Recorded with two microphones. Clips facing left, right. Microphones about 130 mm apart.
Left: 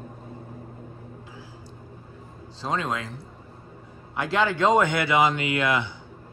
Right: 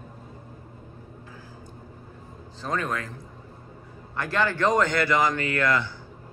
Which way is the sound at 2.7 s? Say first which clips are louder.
Left 1 dB; 15° left (ahead or behind).